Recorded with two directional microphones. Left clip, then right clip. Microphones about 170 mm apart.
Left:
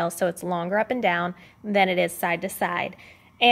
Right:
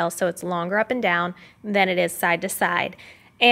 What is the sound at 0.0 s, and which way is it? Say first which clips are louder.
A woman's voice: right 2 dB; 20° right (ahead or behind).